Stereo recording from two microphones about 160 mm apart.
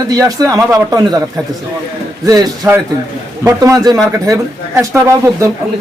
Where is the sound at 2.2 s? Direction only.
20° right (ahead or behind).